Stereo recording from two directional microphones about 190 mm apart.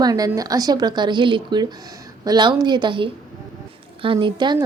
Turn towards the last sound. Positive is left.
turn(degrees=-25)  # may be behind; listen again after turning